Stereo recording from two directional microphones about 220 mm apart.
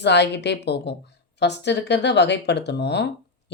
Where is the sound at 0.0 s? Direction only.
50° left (ahead or behind).